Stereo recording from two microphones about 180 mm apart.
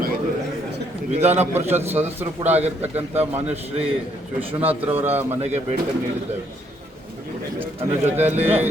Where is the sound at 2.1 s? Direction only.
10° right (ahead or behind).